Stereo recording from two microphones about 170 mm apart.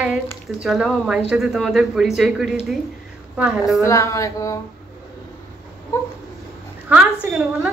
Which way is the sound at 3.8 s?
20° left (ahead or behind).